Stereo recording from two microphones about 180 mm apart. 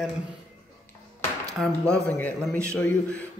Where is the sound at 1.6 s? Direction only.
5° left (ahead or behind).